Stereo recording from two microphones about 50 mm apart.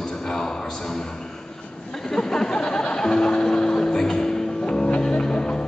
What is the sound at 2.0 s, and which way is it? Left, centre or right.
Music, centre.